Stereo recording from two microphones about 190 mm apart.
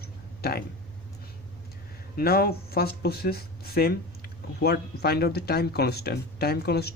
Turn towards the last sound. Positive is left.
turn(degrees=55)  # may be behind; listen again after turning